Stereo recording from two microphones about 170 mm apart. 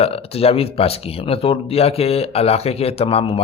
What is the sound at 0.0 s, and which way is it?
Speech, 35° left (ahead or behind).